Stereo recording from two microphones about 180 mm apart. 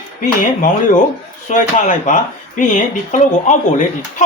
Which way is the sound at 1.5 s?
40° left (ahead or behind).